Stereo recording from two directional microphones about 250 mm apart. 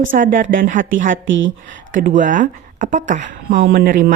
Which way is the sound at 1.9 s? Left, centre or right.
Right.